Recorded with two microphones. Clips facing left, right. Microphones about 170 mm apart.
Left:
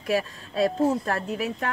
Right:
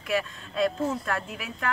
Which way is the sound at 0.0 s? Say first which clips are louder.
Left 3 dB; 35° left (ahead or behind).